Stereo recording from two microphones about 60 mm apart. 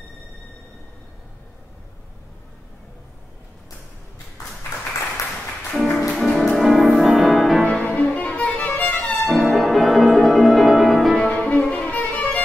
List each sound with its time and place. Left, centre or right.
5.7 s music: centre
7.8 s music: left
9.3 s music: centre
11.2 s music: centre
11.8 s violin: left